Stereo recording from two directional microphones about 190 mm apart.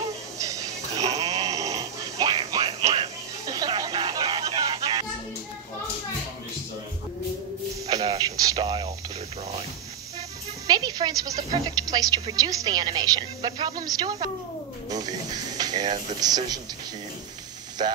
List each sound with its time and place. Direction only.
1.3 s a sound: 20° right (ahead or behind)
7.9 s radio: 20° right (ahead or behind)
10.7 s a woman's voice: 20° right (ahead or behind)
17.8 s a woman's voice: 25° right (ahead or behind)